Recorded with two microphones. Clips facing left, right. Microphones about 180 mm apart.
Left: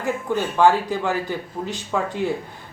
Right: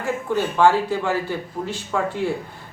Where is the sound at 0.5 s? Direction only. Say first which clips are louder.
Even; 15° left (ahead or behind).